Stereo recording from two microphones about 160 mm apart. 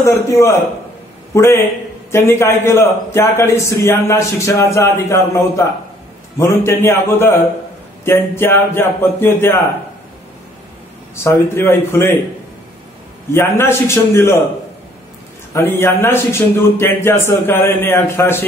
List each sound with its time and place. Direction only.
0.0 s a man's voice: 15° left (ahead or behind)
11.2 s a man's voice: 15° left (ahead or behind)
13.3 s a man's voice: 15° left (ahead or behind)
15.5 s a man's voice: 15° left (ahead or behind)